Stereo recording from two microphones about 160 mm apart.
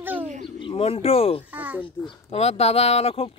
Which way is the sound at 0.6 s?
35° left (ahead or behind).